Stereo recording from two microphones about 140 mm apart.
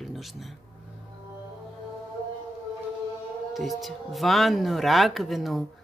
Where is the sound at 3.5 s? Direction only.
Centre (ahead or behind).